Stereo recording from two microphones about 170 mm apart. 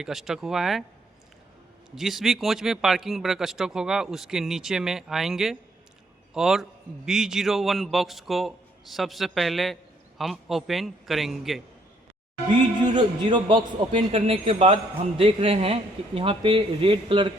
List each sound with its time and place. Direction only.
0.0 s speech: centre (ahead or behind)
2.0 s speech: centre (ahead or behind)
12.8 s a man's voice: 25° right (ahead or behind)